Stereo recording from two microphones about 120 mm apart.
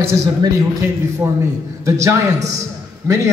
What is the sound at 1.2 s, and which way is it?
Speech, 20° right (ahead or behind).